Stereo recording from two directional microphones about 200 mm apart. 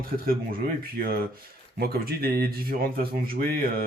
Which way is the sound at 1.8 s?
50° right (ahead or behind).